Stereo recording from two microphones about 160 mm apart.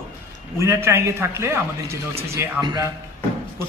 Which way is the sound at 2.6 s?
25° right (ahead or behind).